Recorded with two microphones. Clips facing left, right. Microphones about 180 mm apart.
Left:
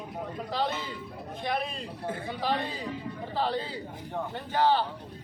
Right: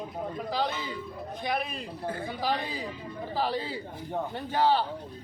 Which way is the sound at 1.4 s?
Centre (ahead or behind).